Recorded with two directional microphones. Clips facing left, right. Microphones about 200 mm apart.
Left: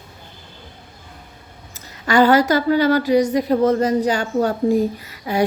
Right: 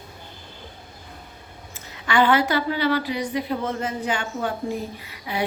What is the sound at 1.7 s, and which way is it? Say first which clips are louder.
A woman's voice: left 5 dB; 40° left (ahead or behind).